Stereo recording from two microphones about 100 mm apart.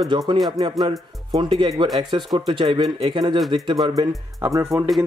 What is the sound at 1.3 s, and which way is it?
Speech, 50° right (ahead or behind).